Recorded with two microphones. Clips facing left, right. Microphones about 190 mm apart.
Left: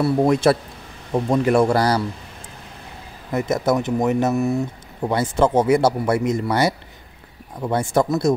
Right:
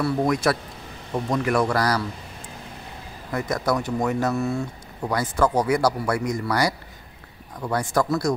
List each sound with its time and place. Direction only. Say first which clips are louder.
0.0 s speech: left 5 dB; 25° left (ahead or behind)
3.3 s speech: left 4 dB; 20° left (ahead or behind)